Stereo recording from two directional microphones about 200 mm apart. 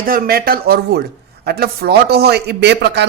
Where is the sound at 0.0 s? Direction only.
45° right (ahead or behind).